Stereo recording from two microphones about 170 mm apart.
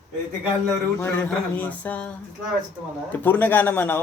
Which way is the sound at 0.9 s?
10° left (ahead or behind).